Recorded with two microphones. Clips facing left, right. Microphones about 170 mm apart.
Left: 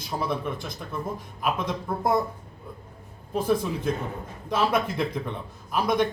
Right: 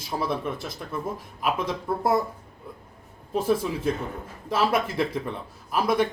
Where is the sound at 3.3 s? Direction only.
Centre (ahead or behind).